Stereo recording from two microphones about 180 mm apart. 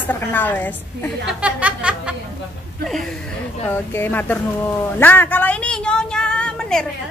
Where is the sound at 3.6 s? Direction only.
10° left (ahead or behind).